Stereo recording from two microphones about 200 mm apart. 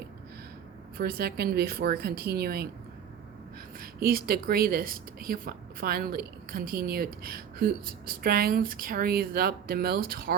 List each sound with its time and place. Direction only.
0.9 s a woman's voice: 50° right (ahead or behind)
3.8 s a woman's voice: 45° right (ahead or behind)